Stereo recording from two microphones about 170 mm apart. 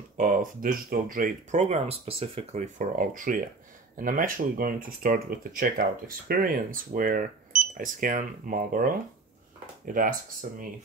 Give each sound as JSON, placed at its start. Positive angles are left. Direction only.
{"t": 0.2, "sound": "speech", "side_deg": -50}